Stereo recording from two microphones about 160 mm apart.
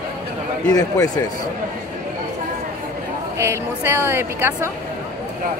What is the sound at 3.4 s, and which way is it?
A woman's voice, 15° right (ahead or behind).